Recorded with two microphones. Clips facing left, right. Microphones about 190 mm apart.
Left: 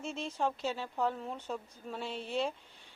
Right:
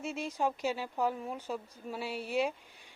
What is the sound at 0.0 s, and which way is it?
A woman's voice, 10° right (ahead or behind).